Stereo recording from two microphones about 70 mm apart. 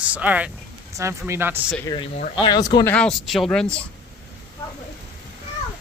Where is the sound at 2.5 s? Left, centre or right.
Left.